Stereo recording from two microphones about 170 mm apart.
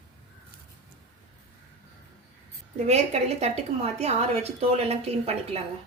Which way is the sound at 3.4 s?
35° right (ahead or behind).